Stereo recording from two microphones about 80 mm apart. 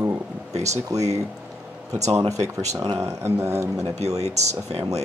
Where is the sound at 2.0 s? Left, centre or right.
Right.